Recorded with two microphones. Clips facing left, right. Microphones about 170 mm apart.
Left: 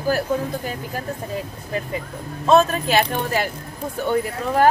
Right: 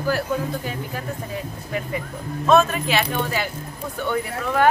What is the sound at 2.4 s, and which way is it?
Speech, 35° left (ahead or behind).